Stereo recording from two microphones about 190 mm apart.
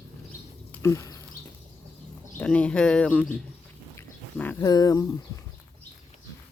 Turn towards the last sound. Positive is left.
turn(degrees=20)  # may be behind; listen again after turning